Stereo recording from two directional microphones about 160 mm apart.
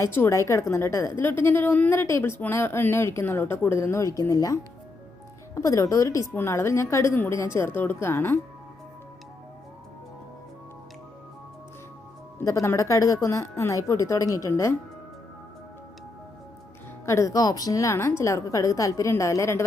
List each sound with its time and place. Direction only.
0.0 s speech: 15° left (ahead or behind)
12.5 s a woman's voice: 20° left (ahead or behind)
17.1 s a woman's voice: 20° left (ahead or behind)